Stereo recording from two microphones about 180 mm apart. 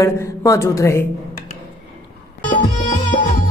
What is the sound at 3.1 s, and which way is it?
Music, 50° left (ahead or behind).